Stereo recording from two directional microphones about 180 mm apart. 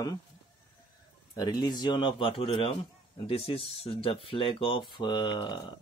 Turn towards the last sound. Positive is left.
turn(degrees=25)  # may be behind; listen again after turning